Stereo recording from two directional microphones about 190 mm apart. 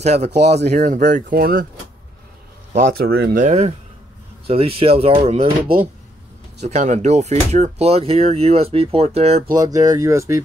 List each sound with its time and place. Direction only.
0.0 s speech: 35° right (ahead or behind)
2.7 s speech: 50° right (ahead or behind)
3.4 s speech: 35° right (ahead or behind)
5.7 s speech: 50° right (ahead or behind)
6.6 s speech: 40° right (ahead or behind)
9.5 s speech: 20° right (ahead or behind)